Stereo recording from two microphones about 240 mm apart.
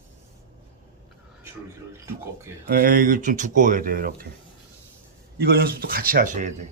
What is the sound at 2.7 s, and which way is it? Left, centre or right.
Speech, right.